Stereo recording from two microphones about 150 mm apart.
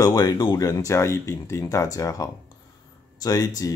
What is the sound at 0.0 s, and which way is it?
Speech, 25° left (ahead or behind).